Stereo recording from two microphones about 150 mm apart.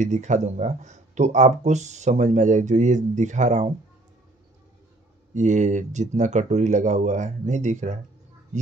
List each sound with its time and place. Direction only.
0.0 s speech: 50° right (ahead or behind)
5.3 s speech: 55° right (ahead or behind)